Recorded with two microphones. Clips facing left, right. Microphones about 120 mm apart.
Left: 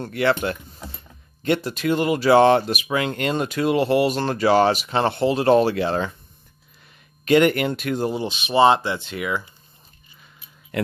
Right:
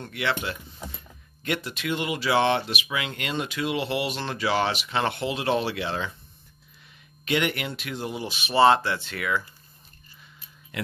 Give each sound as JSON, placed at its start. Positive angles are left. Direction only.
{"t": 0.0, "sound": "speech", "side_deg": 45}
{"t": 1.4, "sound": "speech", "side_deg": 35}
{"t": 7.2, "sound": "speech", "side_deg": 45}
{"t": 8.1, "sound": "speech", "side_deg": 25}
{"t": 10.7, "sound": "a sound", "side_deg": 50}